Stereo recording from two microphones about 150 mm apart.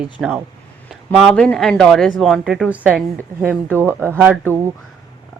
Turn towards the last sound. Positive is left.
turn(degrees=-15)  # may be behind; listen again after turning